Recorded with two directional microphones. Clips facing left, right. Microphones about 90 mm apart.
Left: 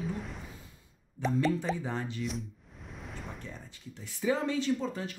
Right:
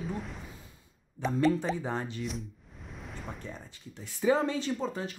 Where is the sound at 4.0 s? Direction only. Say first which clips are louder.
Right 4 dB; 40° right (ahead or behind).